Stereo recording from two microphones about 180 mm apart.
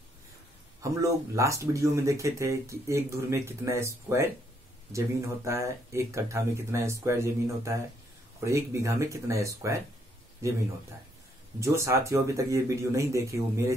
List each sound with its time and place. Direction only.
0.8 s speech: 15° right (ahead or behind)
11.6 s speech: 15° right (ahead or behind)